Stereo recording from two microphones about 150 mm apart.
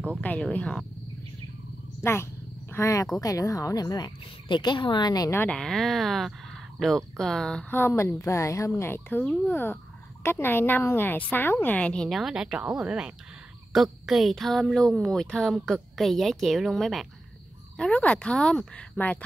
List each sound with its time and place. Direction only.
0.2 s speech: 10° left (ahead or behind)
2.0 s speech: 15° left (ahead or behind)
7.7 s a woman's voice: 15° left (ahead or behind)